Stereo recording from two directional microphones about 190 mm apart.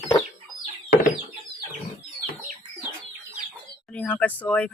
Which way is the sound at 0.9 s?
50° left (ahead or behind).